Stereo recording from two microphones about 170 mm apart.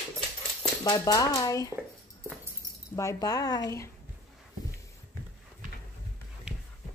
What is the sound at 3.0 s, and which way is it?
Speech, 20° left (ahead or behind).